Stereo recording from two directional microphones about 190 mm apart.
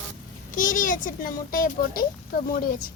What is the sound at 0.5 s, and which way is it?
A child's voice, 45° left (ahead or behind).